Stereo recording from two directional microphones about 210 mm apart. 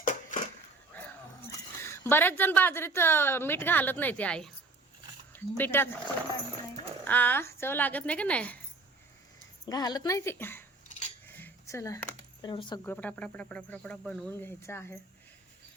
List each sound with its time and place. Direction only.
0.0 s a sound: 35° left (ahead or behind)
1.8 s a woman's voice: 10° left (ahead or behind)
7.0 s a woman's voice: 10° left (ahead or behind)
9.6 s a woman's voice: 20° left (ahead or behind)
11.3 s a sound: 10° left (ahead or behind)
12.4 s speech: 20° left (ahead or behind)
12.8 s a woman's voice: 10° left (ahead or behind)